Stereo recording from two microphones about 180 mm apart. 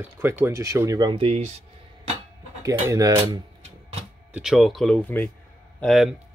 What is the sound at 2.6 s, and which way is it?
Speech, 15° right (ahead or behind).